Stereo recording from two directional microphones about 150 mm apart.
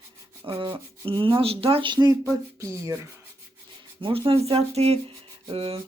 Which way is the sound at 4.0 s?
40° right (ahead or behind).